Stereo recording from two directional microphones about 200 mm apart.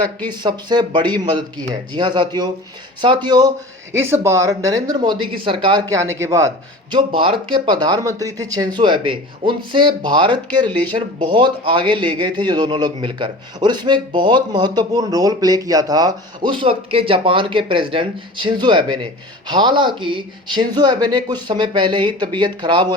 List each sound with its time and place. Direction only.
0.3 s a man's voice: 20° right (ahead or behind)
6.9 s a man's voice: 25° right (ahead or behind)